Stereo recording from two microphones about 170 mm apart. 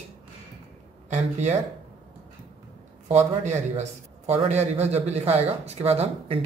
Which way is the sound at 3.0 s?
40° right (ahead or behind).